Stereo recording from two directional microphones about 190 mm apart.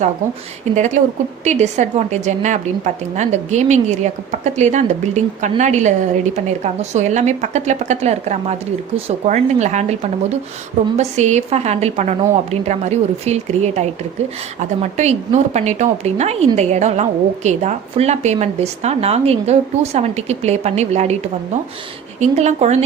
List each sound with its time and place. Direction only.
0.7 s a woman's voice: 40° right (ahead or behind)
22.2 s a woman's voice: 35° right (ahead or behind)